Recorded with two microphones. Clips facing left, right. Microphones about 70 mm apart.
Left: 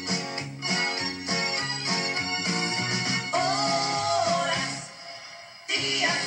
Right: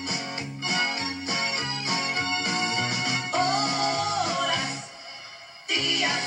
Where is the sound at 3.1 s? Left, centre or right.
Left.